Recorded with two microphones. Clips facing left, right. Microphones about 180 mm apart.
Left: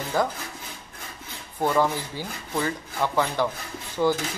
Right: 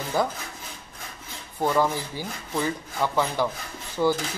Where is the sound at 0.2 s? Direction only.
10° right (ahead or behind).